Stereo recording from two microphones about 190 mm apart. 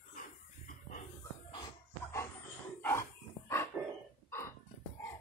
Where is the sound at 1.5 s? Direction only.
20° left (ahead or behind).